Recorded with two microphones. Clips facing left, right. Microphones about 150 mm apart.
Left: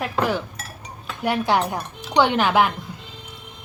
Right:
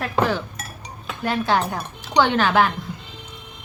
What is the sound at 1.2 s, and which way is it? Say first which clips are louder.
Speech: left 1 dB; 15° left (ahead or behind).